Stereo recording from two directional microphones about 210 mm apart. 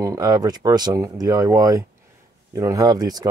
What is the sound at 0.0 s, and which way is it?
Speech, 15° right (ahead or behind).